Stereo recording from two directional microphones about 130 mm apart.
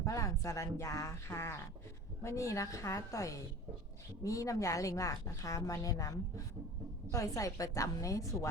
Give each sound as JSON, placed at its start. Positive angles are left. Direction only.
{"t": 0.0, "sound": "a woman's voice", "side_deg": 25}